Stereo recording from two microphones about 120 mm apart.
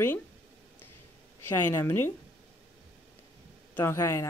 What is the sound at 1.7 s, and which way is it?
Speech, 20° left (ahead or behind).